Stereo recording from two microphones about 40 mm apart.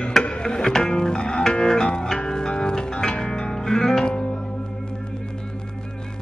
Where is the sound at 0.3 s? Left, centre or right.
Left.